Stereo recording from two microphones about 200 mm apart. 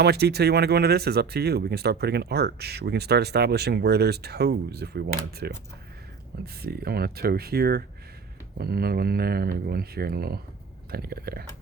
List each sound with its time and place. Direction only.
0.0 s speech: 55° right (ahead or behind)